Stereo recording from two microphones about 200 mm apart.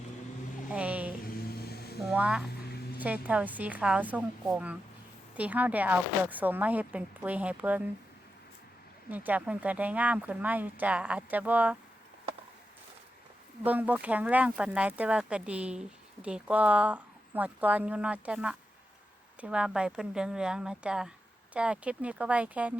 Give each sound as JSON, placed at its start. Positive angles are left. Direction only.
{"t": 0.7, "sound": "a sound", "side_deg": -5}
{"t": 1.2, "sound": "vehicle", "side_deg": 50}
{"t": 2.0, "sound": "speech", "side_deg": -5}
{"t": 9.0, "sound": "speech", "side_deg": -10}
{"t": 13.7, "sound": "speech", "side_deg": -10}